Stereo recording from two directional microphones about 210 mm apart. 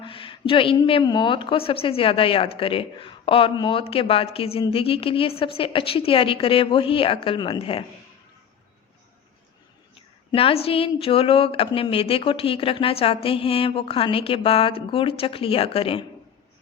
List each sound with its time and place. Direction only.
0.0 s a woman's voice: 25° left (ahead or behind)
10.3 s a woman's voice: 25° left (ahead or behind)